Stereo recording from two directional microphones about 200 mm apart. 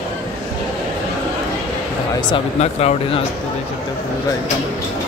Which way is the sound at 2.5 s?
30° left (ahead or behind).